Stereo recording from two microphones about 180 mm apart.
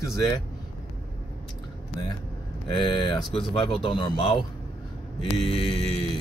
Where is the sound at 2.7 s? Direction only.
25° left (ahead or behind).